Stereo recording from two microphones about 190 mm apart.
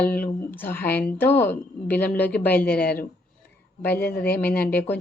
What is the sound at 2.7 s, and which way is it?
Speech, 55° left (ahead or behind).